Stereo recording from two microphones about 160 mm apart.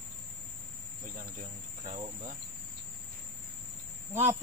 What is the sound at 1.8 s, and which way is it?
Cricket, 40° right (ahead or behind).